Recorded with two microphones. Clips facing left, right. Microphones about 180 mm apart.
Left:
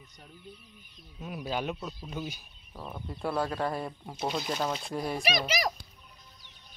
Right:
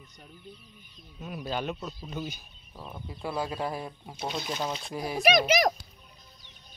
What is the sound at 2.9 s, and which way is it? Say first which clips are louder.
Speech: left 2 dB; centre (ahead or behind).